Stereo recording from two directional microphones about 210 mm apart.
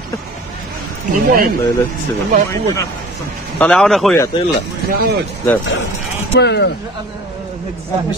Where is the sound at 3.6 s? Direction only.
5° left (ahead or behind).